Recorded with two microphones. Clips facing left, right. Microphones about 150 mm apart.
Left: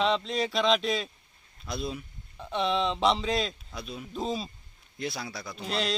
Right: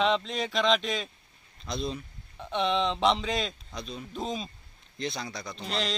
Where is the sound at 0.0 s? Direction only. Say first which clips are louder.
Even; centre (ahead or behind).